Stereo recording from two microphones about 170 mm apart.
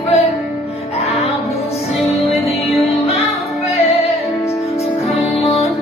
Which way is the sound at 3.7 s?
35° left (ahead or behind).